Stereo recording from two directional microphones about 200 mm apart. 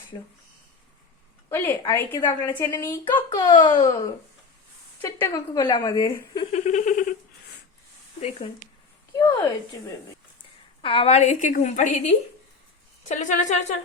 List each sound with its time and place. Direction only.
0.1 s a woman's voice: 20° left (ahead or behind)
1.5 s a woman's voice: 10° left (ahead or behind)
3.2 s a woman's voice: 20° left (ahead or behind)
6.4 s giggle: 35° left (ahead or behind)
9.1 s a woman's voice: 20° left (ahead or behind)
10.8 s a woman's voice: 30° left (ahead or behind)